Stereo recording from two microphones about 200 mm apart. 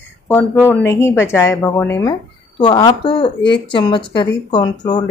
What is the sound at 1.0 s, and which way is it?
A woman's voice, 15° left (ahead or behind).